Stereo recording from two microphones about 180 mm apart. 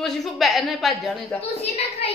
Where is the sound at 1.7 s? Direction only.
35° left (ahead or behind).